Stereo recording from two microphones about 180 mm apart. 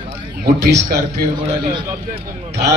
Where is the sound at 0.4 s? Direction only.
70° right (ahead or behind).